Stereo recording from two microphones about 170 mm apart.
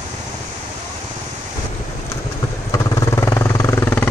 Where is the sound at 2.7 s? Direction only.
20° left (ahead or behind).